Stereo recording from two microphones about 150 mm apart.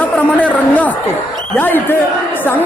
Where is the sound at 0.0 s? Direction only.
10° left (ahead or behind).